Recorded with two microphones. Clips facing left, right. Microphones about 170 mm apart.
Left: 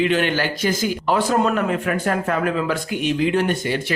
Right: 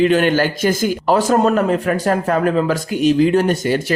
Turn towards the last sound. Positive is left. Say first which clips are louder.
# right 5 dB
turn(degrees=-40)  # may be behind; listen again after turning